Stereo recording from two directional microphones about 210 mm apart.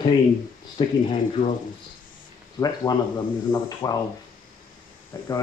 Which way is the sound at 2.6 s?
20° left (ahead or behind).